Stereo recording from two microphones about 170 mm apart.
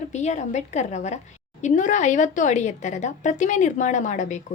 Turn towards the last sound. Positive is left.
turn(degrees=45)  # may be behind; listen again after turning